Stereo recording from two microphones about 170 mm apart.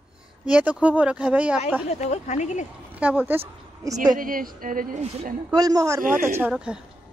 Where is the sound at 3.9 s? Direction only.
55° right (ahead or behind).